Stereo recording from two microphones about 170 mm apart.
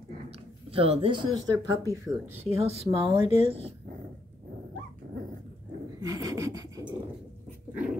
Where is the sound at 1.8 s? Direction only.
15° right (ahead or behind).